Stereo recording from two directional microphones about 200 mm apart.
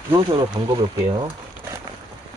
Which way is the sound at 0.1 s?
25° right (ahead or behind).